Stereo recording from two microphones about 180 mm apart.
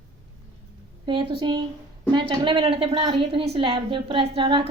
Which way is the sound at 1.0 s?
25° right (ahead or behind).